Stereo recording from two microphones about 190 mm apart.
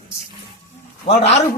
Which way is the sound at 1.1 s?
35° left (ahead or behind).